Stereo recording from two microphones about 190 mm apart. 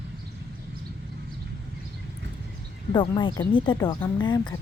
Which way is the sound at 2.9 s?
25° left (ahead or behind).